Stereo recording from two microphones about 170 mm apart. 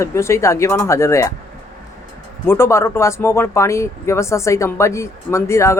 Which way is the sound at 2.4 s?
15° left (ahead or behind).